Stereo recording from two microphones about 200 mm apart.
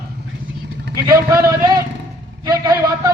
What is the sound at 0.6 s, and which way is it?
Vehicle, 60° right (ahead or behind).